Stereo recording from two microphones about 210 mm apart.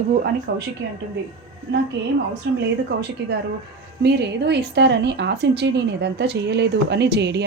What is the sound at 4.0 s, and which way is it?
A woman's voice, 55° right (ahead or behind).